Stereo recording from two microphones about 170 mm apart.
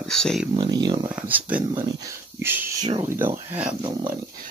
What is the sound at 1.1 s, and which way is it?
Speech, 10° right (ahead or behind).